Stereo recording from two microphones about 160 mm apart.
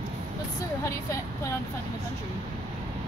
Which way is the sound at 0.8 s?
20° left (ahead or behind).